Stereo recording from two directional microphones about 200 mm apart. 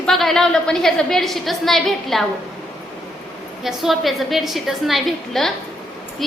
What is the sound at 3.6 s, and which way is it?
A woman's voice, centre (ahead or behind).